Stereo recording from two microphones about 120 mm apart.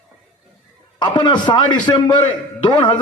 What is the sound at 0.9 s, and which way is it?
A man's voice, 40° left (ahead or behind).